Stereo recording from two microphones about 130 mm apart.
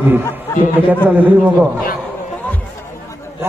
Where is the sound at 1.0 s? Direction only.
15° right (ahead or behind).